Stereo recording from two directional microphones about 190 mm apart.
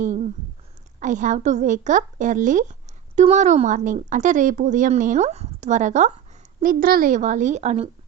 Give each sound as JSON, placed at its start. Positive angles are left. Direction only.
{"t": 0.9, "sound": "a woman's voice", "side_deg": -40}